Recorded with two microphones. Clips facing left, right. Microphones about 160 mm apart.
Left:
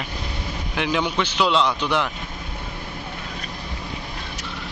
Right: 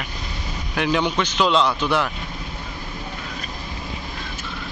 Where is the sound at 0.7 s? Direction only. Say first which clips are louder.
Right 2 dB; 10° left (ahead or behind).